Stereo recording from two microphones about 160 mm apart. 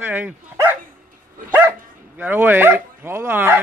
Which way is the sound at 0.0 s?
10° right (ahead or behind).